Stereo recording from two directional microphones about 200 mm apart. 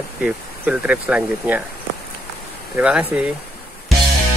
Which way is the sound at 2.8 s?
5° right (ahead or behind).